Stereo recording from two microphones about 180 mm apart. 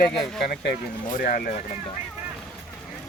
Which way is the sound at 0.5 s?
60° left (ahead or behind).